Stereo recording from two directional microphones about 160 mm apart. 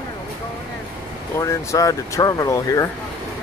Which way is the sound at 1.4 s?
20° left (ahead or behind).